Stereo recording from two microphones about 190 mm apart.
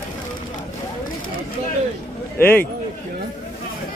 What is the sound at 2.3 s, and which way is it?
Speech, 10° left (ahead or behind).